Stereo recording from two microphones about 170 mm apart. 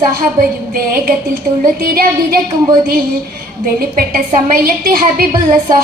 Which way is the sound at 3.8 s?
60° right (ahead or behind).